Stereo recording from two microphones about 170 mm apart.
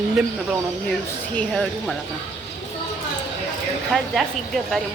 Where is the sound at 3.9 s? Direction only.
Centre (ahead or behind).